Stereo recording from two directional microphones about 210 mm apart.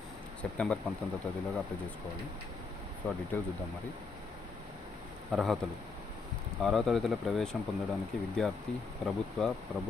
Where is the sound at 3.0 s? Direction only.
10° left (ahead or behind).